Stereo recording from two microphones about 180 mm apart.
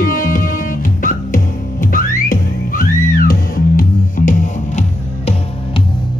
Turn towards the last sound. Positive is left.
turn(degrees=45)  # may be behind; listen again after turning